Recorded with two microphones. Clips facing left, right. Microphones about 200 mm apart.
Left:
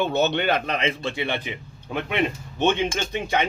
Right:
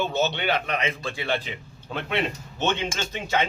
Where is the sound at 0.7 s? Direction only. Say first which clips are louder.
Left 3 dB; 30° left (ahead or behind); by 2.8 s 15° left (ahead or behind).